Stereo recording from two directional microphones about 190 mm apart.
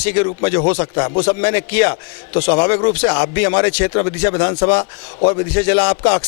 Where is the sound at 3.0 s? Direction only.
10° left (ahead or behind).